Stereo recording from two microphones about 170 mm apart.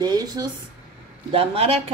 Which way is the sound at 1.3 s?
35° right (ahead or behind).